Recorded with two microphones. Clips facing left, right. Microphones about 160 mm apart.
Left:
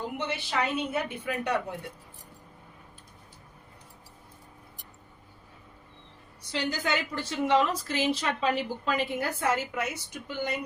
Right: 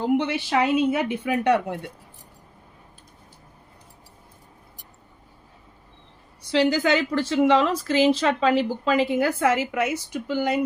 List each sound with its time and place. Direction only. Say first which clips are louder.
0.2 s a woman's voice: right 8 dB; 90° right
6.5 s a woman's voice: right 10 dB; 90° right